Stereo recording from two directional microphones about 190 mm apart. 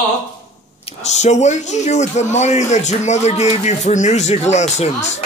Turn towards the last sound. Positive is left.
turn(degrees=35)  # may be behind; listen again after turning